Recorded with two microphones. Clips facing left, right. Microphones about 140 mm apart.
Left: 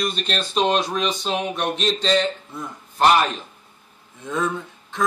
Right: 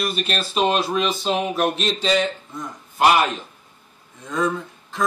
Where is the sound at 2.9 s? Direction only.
10° right (ahead or behind).